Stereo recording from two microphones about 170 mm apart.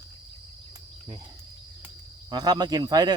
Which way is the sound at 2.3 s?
25° right (ahead or behind).